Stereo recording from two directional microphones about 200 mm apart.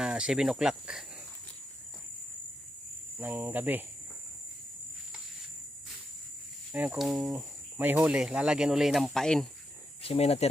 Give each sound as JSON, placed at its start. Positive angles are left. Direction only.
{"t": 0.0, "sound": "speech", "side_deg": -5}
{"t": 3.2, "sound": "speech", "side_deg": -10}
{"t": 6.7, "sound": "speech", "side_deg": -10}
{"t": 10.0, "sound": "speech", "side_deg": 30}